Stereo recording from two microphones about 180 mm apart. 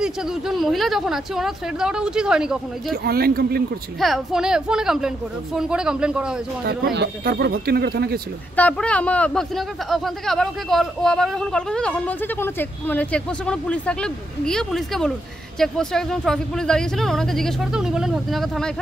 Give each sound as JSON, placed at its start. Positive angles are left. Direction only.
{"t": 0.0, "sound": "a man's voice", "side_deg": 0}
{"t": 2.9, "sound": "speech", "side_deg": -60}
{"t": 4.0, "sound": "a man's voice", "side_deg": 0}
{"t": 6.6, "sound": "speech", "side_deg": -60}
{"t": 8.5, "sound": "a man's voice", "side_deg": 5}